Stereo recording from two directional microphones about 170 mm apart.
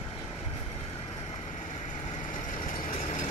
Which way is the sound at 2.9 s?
45° left (ahead or behind).